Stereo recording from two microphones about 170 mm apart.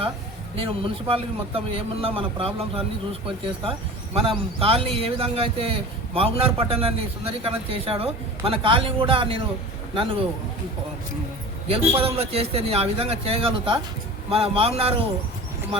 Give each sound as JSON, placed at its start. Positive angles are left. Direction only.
{"t": 0.5, "sound": "a man's voice", "side_deg": -30}
{"t": 11.7, "sound": "a man's voice", "side_deg": -35}